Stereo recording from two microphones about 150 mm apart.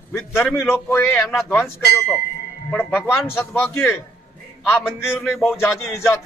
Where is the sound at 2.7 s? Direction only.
15° left (ahead or behind).